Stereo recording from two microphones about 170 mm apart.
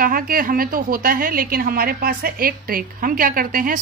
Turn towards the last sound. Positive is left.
turn(degrees=-55)  # may be behind; listen again after turning